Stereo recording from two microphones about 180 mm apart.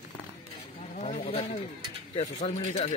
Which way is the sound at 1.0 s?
35° left (ahead or behind).